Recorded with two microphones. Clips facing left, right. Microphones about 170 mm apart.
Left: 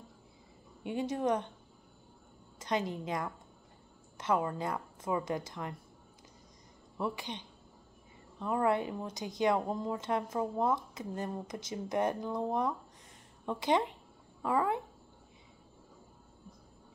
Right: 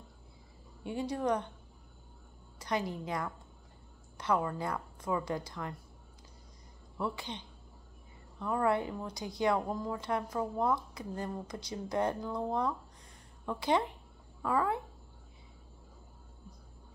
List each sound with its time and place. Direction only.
0.8 s a woman's voice: 20° left (ahead or behind)
2.6 s a woman's voice: 20° left (ahead or behind)
7.0 s a woman's voice: 15° left (ahead or behind)